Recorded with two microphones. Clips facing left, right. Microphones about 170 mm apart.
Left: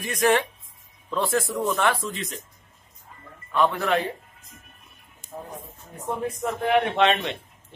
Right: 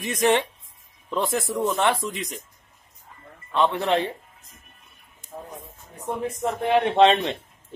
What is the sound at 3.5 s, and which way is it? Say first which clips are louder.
Speech: right 1 dB; 25° right (ahead or behind).